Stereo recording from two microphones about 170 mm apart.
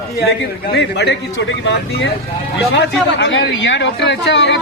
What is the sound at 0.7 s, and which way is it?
Speech, 80° left.